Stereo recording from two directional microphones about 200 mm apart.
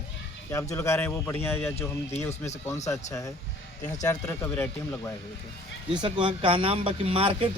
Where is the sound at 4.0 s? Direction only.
15° left (ahead or behind).